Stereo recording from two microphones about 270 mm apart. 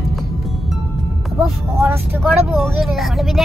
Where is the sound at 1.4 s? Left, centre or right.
Centre.